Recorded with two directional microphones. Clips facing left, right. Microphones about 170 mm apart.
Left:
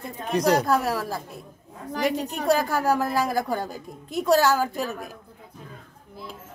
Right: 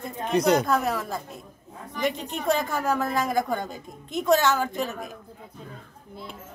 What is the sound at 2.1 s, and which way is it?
Speech, 40° left (ahead or behind).